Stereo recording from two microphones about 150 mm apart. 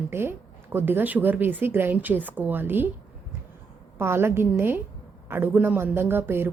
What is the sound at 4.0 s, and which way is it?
A woman's voice, 15° right (ahead or behind).